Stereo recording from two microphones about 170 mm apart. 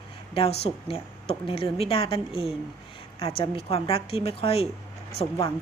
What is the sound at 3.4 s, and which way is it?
Speech, 35° left (ahead or behind).